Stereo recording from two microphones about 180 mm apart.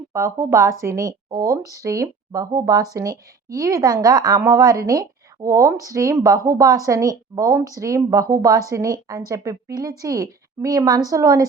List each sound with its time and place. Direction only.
0.1 s speech: 15° right (ahead or behind)